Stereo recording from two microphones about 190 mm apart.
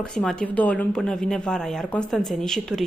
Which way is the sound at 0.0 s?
5° left (ahead or behind).